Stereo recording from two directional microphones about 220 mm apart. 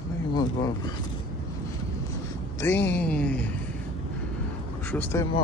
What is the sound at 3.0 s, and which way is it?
Speech, 5° left (ahead or behind).